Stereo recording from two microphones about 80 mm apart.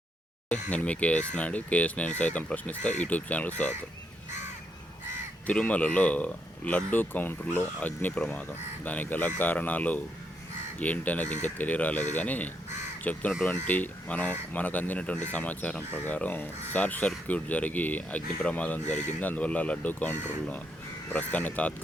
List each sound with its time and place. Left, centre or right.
0.5 s speech: centre
5.5 s speech: centre